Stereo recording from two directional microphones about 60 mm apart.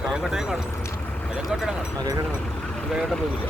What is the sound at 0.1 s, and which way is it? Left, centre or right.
Speech, centre.